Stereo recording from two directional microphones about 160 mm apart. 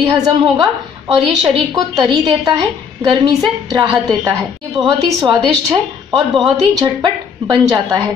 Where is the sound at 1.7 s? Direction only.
25° right (ahead or behind).